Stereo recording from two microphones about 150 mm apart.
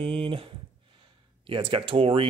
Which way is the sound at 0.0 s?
35° right (ahead or behind).